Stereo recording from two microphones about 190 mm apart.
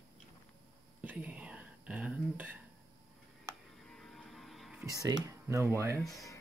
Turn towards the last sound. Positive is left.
turn(degrees=0)  # may be behind; listen again after turning